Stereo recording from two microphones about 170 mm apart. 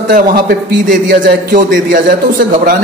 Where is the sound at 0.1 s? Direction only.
60° right (ahead or behind).